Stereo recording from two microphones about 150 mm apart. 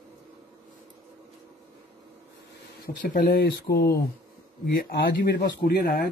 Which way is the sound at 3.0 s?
75° left (ahead or behind).